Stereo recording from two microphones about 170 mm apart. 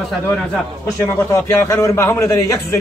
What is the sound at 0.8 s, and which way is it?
A man's voice, 15° left (ahead or behind).